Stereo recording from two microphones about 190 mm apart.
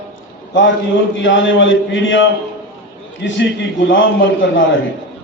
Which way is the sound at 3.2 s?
65° left (ahead or behind).